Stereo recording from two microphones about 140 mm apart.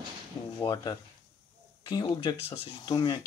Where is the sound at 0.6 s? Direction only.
30° left (ahead or behind).